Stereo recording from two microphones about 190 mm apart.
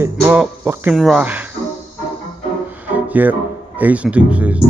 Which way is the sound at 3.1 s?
10° right (ahead or behind).